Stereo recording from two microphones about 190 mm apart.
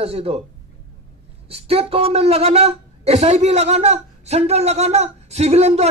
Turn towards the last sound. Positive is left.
turn(degrees=-35)  # may be behind; listen again after turning